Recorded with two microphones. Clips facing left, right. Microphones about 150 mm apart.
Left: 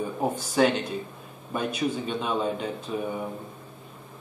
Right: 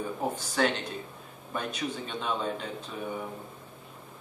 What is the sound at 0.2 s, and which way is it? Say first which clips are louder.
Speech: left 6 dB; 15° left (ahead or behind).